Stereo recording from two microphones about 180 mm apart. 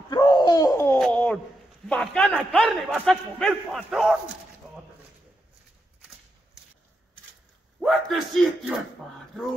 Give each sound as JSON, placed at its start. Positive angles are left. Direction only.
{"t": 0.1, "sound": "laughter", "side_deg": 25}
{"t": 0.9, "sound": "a sound", "side_deg": 5}
{"t": 1.9, "sound": "a man's voice", "side_deg": 5}
{"t": 7.8, "sound": "a man's voice", "side_deg": 0}